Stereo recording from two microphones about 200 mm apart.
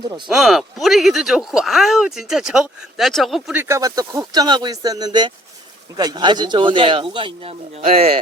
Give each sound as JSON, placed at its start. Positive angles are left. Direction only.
{"t": 0.3, "sound": "a man's voice", "side_deg": 0}